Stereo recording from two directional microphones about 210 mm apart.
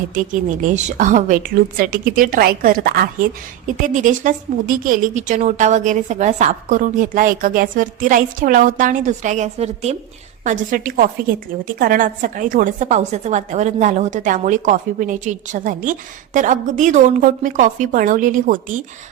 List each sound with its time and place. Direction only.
0.1 s a woman's voice: 40° right (ahead or behind)